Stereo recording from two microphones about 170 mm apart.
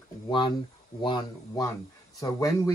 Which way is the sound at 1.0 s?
25° left (ahead or behind).